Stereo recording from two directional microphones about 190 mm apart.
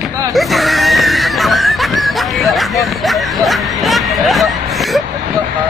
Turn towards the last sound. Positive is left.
turn(degrees=0)  # may be behind; listen again after turning